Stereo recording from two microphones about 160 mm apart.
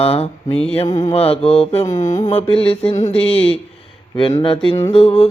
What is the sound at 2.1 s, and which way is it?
Music, 45° left (ahead or behind).